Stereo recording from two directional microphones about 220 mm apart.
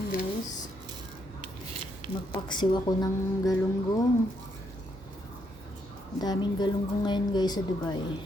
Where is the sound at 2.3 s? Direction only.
20° left (ahead or behind).